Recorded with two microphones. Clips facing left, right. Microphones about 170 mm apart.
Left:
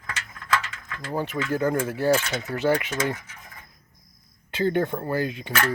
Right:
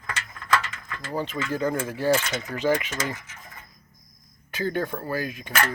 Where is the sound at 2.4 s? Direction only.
15° right (ahead or behind).